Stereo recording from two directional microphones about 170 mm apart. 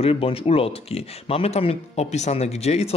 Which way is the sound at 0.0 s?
35° left (ahead or behind).